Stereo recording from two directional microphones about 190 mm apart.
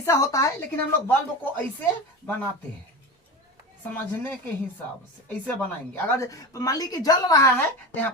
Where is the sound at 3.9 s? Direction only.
10° left (ahead or behind).